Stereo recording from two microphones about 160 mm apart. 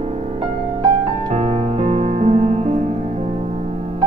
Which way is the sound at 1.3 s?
45° right (ahead or behind).